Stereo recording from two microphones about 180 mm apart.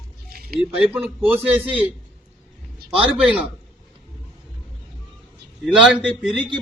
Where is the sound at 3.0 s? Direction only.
5° right (ahead or behind).